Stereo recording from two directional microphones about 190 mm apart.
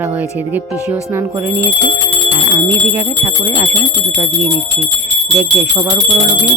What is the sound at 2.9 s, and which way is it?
Speech, 15° right (ahead or behind).